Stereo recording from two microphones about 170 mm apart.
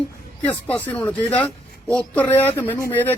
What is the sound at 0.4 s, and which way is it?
A man's voice, 10° left (ahead or behind).